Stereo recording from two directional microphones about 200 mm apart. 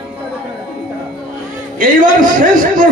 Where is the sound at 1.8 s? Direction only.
40° right (ahead or behind).